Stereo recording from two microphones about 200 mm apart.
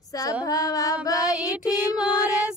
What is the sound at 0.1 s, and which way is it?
Female singing, 15° left (ahead or behind).